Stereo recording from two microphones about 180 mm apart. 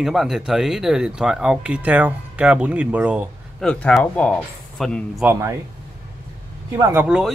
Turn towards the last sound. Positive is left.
turn(degrees=-5)  # may be behind; listen again after turning